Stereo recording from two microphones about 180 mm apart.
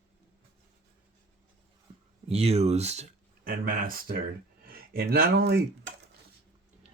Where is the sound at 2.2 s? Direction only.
35° right (ahead or behind).